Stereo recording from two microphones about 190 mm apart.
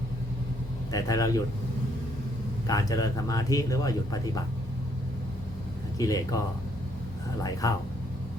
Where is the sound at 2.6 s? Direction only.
20° left (ahead or behind).